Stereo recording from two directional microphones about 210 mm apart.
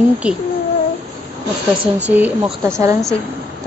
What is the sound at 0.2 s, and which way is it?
Speech, 5° right (ahead or behind).